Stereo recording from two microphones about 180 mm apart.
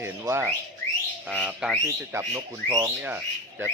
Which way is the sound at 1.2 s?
5° right (ahead or behind).